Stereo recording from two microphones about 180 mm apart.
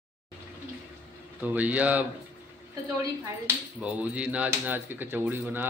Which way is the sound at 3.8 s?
5° right (ahead or behind).